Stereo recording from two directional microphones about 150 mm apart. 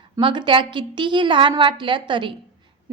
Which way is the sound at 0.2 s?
35° right (ahead or behind).